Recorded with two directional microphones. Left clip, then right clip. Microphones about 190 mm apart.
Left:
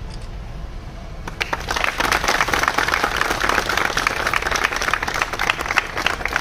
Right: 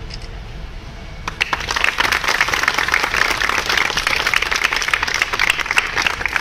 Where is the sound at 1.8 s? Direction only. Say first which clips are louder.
Right 2 dB; 40° left (ahead or behind).